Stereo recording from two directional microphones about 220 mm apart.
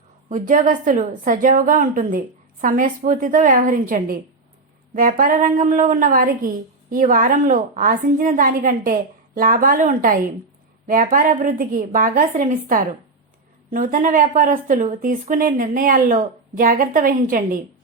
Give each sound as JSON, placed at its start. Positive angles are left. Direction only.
{"t": 0.3, "sound": "speech", "side_deg": -35}